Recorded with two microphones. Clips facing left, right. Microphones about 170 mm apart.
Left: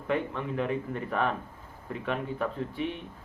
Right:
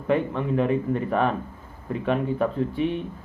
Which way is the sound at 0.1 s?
30° right (ahead or behind).